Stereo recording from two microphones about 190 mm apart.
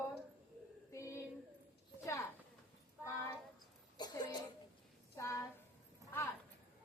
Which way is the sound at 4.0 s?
20° left (ahead or behind).